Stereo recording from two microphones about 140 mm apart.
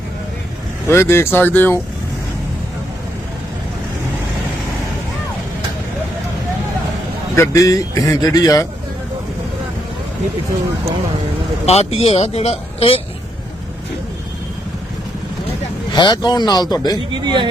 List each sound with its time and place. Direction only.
0.9 s speech: 20° left (ahead or behind)
7.3 s a man's voice: 20° left (ahead or behind)
11.6 s speech: 50° left (ahead or behind)
16.0 s a man's voice: 30° left (ahead or behind)
17.1 s speech: 30° right (ahead or behind)